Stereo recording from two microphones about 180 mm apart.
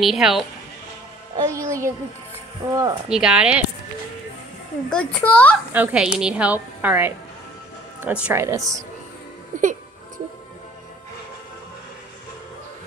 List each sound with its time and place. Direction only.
0.0 s speech: centre (ahead or behind)
1.3 s a woman's voice: 20° right (ahead or behind)
3.1 s speech: 5° right (ahead or behind)
4.8 s a child's voice: 5° left (ahead or behind)
5.7 s a woman's voice: 10° right (ahead or behind)
9.5 s speech: 45° right (ahead or behind)